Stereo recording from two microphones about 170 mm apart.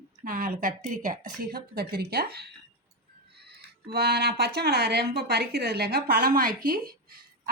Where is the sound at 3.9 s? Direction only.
70° right (ahead or behind).